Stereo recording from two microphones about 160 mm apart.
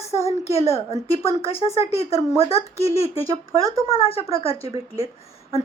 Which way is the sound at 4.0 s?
35° left (ahead or behind).